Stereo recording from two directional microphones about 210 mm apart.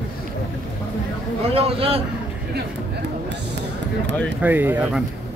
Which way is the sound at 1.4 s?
30° right (ahead or behind).